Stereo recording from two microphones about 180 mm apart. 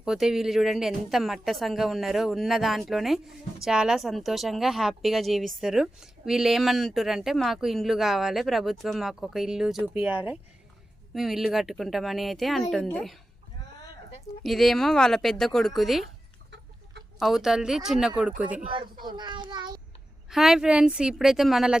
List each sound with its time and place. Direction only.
0.0 s speech: 5° right (ahead or behind)
14.4 s speech: centre (ahead or behind)
17.2 s speech: centre (ahead or behind)
19.0 s a child's voice: 25° right (ahead or behind)
20.3 s speech: centre (ahead or behind)